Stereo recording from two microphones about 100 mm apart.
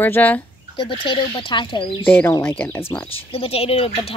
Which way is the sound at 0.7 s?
55° left (ahead or behind).